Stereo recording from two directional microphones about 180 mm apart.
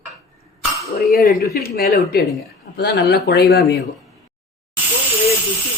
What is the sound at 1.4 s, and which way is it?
Speech, 60° left (ahead or behind).